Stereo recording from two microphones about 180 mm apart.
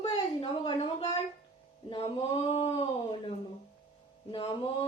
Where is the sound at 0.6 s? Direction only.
30° left (ahead or behind).